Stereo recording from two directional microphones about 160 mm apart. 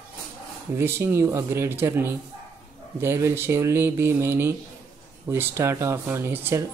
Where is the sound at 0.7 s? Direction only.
15° right (ahead or behind).